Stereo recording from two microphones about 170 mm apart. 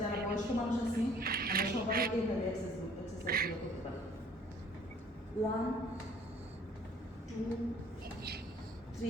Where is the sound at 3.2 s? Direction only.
60° right (ahead or behind).